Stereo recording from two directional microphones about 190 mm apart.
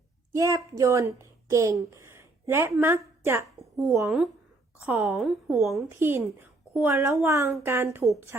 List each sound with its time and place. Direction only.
0.3 s a woman's voice: 15° right (ahead or behind)